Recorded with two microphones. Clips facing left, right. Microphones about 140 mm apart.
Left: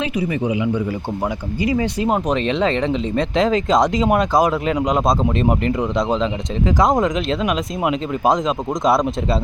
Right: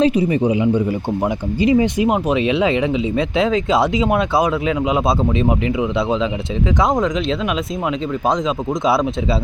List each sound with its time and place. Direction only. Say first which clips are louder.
0.0 s speech: right 6 dB; 30° right (ahead or behind)
2.0 s speech: right 2 dB; 10° right (ahead or behind)